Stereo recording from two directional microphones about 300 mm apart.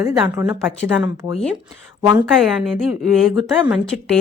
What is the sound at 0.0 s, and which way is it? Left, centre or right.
A woman's voice, centre.